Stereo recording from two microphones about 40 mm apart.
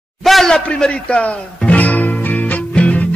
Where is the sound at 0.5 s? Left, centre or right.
Centre.